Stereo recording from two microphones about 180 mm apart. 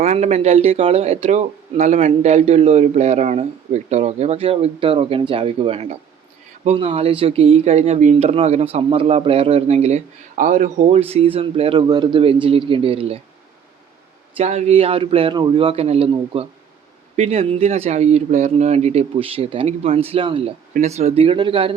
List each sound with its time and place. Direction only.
0.0 s speech: 40° right (ahead or behind)
14.3 s speech: 40° right (ahead or behind)